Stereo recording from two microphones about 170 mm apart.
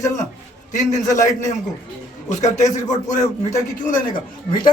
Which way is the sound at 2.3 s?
45° left (ahead or behind).